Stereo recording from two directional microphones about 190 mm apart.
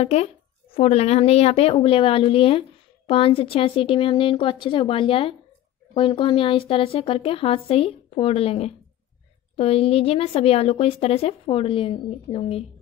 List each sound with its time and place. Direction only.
0.0 s a woman's voice: 35° left (ahead or behind)